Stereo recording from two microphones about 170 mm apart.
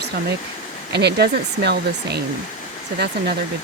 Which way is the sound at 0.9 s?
75° right (ahead or behind).